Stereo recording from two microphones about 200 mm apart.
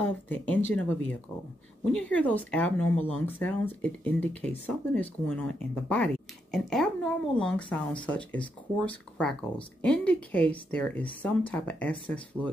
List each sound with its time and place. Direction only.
0.0 s speech: 10° left (ahead or behind)